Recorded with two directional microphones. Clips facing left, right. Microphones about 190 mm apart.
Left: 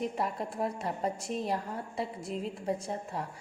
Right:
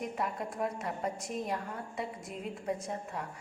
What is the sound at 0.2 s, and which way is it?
A woman's voice, 30° left (ahead or behind).